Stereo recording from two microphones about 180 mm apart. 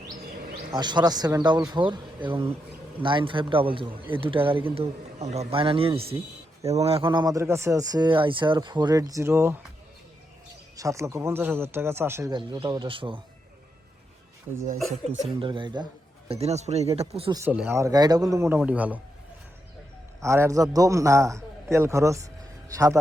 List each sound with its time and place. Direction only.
0.7 s a man's voice: 25° right (ahead or behind)
10.8 s a man's voice: 15° right (ahead or behind)
12.3 s a man's voice: 25° right (ahead or behind)
15.0 s a man's voice: 30° right (ahead or behind)
16.3 s a man's voice: 35° right (ahead or behind)
17.3 s a man's voice: 10° right (ahead or behind)
20.2 s a man's voice: 15° right (ahead or behind)